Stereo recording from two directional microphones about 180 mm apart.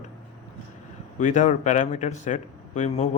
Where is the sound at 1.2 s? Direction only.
45° left (ahead or behind).